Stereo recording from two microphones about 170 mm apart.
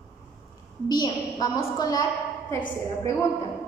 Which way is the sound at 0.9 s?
20° left (ahead or behind).